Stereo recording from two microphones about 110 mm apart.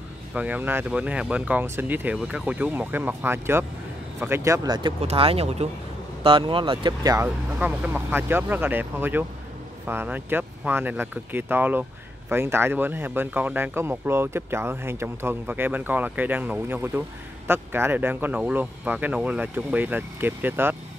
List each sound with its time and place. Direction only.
0.3 s speech: 15° right (ahead or behind)
4.6 s speech: 45° right (ahead or behind)
5.0 s speech: 60° right (ahead or behind)
6.2 s speech: 55° right (ahead or behind); by 7.2 s 35° right (ahead or behind)
7.2 s speech: 10° right (ahead or behind)